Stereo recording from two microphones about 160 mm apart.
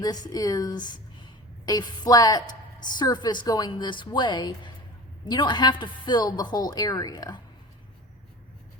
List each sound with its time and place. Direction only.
0.0 s a woman's voice: 25° left (ahead or behind)